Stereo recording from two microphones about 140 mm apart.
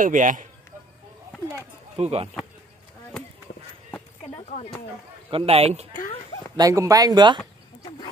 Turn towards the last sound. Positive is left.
turn(degrees=-30)  # may be behind; listen again after turning